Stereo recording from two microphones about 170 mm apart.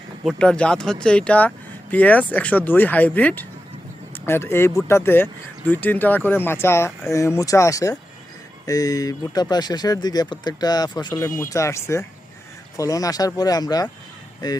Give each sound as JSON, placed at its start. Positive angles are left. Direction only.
{"t": 0.3, "sound": "speech", "side_deg": 5}